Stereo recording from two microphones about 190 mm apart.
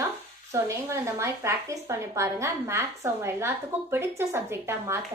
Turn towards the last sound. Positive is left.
turn(degrees=-15)  # may be behind; listen again after turning